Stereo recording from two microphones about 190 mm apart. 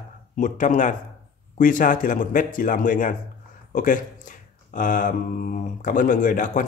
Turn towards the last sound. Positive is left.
turn(degrees=45)  # may be behind; listen again after turning